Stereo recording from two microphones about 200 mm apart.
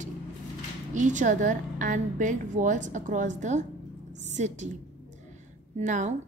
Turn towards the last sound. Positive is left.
turn(degrees=-40)  # may be behind; listen again after turning